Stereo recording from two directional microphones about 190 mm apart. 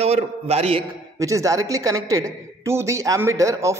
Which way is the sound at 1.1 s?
15° right (ahead or behind).